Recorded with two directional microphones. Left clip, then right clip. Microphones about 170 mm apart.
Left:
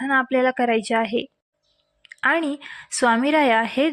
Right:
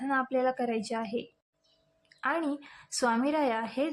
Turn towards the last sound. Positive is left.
turn(degrees=30)  # may be behind; listen again after turning